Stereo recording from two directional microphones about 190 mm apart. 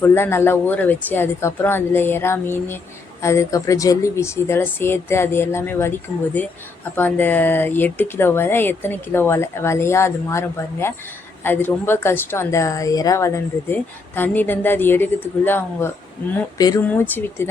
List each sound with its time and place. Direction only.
0.0 s speech: 15° left (ahead or behind)